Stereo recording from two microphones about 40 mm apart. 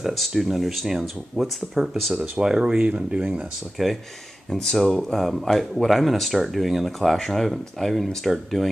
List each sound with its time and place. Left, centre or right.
0.1 s speech: centre
2.3 s speech: centre
2.9 s speech: right
3.7 s speech: centre